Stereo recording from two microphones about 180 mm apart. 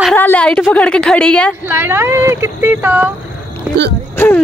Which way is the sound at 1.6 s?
10° right (ahead or behind).